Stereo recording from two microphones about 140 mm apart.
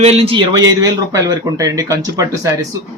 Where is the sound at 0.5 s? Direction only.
25° right (ahead or behind).